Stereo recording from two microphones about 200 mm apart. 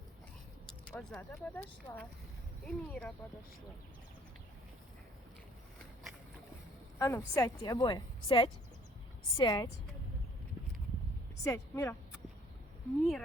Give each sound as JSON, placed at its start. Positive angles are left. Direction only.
{"t": 0.9, "sound": "a woman's voice", "side_deg": 5}
{"t": 7.0, "sound": "a woman's voice", "side_deg": 15}
{"t": 11.4, "sound": "a woman's voice", "side_deg": 15}
{"t": 13.0, "sound": "speech", "side_deg": 0}